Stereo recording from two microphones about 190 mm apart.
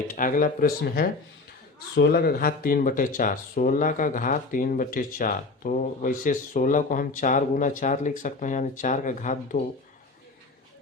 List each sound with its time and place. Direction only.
0.1 s speech: 45° left (ahead or behind)